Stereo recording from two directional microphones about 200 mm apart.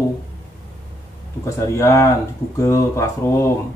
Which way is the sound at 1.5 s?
15° left (ahead or behind).